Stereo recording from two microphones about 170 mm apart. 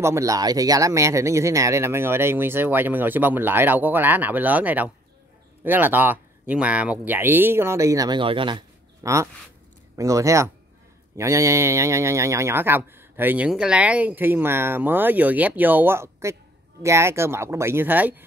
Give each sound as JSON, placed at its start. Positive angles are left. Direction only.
{"t": 0.0, "sound": "speech", "side_deg": -20}